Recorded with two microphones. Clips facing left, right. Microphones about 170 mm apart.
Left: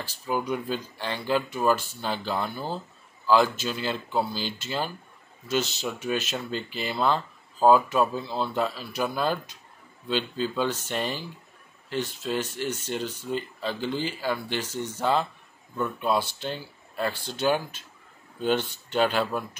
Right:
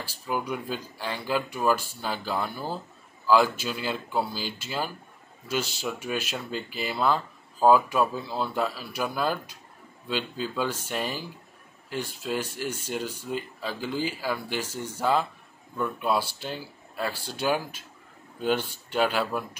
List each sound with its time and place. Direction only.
0.5 s speech: 5° right (ahead or behind)